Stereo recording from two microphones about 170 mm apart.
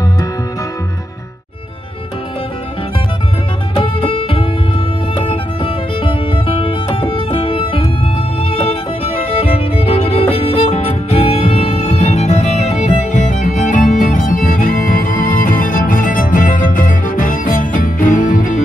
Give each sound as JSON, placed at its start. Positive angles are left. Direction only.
{"t": 3.7, "sound": "music", "side_deg": 30}